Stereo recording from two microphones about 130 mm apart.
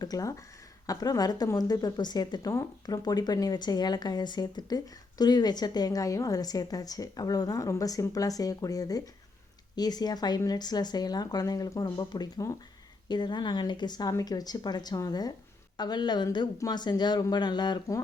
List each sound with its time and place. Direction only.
0.0 s a woman's voice: 30° left (ahead or behind)